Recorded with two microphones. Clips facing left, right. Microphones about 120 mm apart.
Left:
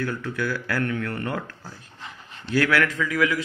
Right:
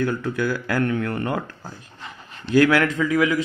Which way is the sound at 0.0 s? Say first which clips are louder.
Right 4 dB; 20° right (ahead or behind).